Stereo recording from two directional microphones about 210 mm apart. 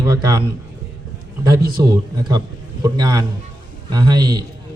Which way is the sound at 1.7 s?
20° right (ahead or behind).